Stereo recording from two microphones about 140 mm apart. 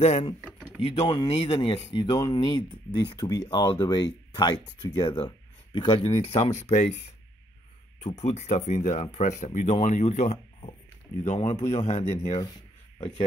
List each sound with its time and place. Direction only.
0.0 s a man's voice: 45° left (ahead or behind)
8.0 s a man's voice: 55° left (ahead or behind)